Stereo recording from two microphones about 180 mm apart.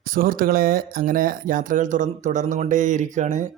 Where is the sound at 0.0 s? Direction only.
50° right (ahead or behind).